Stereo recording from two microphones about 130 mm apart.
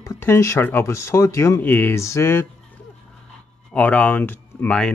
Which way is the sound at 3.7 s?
10° left (ahead or behind).